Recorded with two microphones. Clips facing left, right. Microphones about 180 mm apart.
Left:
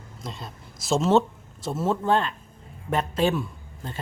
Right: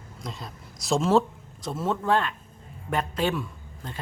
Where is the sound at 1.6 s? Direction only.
25° left (ahead or behind).